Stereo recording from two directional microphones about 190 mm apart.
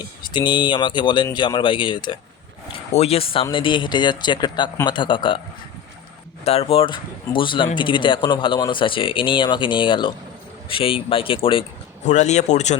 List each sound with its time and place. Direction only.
0.3 s speech: 25° left (ahead or behind)
6.4 s speech: 35° left (ahead or behind)